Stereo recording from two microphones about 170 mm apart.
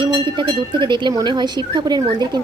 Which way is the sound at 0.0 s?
30° right (ahead or behind).